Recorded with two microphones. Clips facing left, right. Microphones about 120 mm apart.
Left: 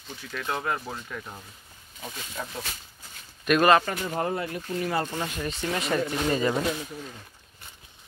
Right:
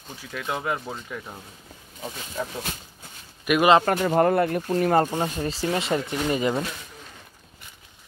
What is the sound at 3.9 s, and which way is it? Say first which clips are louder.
Speech: right 9 dB; 60° right (ahead or behind).